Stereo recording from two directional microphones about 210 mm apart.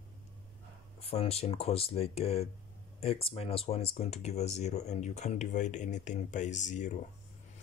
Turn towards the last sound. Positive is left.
turn(degrees=35)  # may be behind; listen again after turning